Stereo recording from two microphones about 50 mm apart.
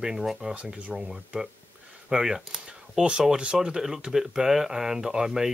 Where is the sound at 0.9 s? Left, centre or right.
Centre.